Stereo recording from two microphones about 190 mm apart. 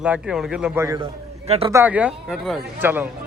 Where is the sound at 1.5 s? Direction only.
30° right (ahead or behind).